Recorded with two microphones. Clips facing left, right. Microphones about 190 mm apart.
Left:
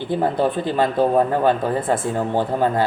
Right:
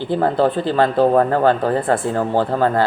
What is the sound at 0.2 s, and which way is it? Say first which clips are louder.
Speech: right 3 dB; 15° left (ahead or behind).